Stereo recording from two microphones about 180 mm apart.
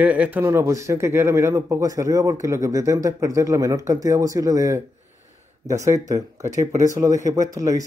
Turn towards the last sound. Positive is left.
turn(degrees=-20)  # may be behind; listen again after turning